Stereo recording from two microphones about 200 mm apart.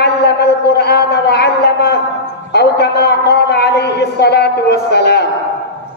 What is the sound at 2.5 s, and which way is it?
A man's voice, 55° left (ahead or behind).